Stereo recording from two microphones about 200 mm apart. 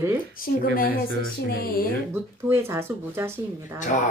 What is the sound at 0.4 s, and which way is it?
Speech, 45° left (ahead or behind).